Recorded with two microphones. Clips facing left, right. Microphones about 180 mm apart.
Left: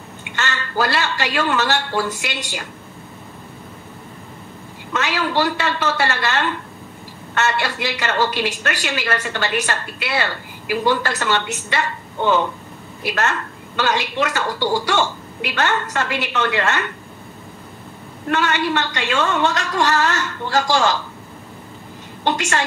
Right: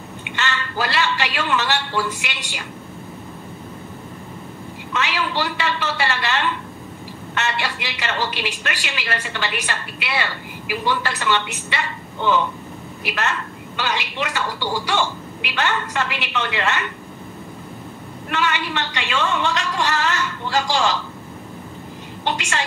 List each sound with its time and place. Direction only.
0.4 s a woman's voice: 45° left (ahead or behind)
4.9 s a woman's voice: 45° left (ahead or behind)
18.3 s a woman's voice: 45° left (ahead or behind)